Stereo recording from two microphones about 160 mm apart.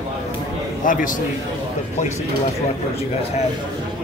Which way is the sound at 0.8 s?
55° left (ahead or behind).